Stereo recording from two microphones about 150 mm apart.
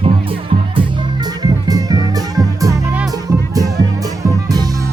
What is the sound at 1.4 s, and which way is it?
Music, 25° right (ahead or behind).